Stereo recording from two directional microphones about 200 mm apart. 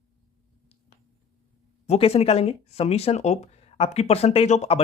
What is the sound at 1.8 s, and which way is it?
Speech, 30° left (ahead or behind).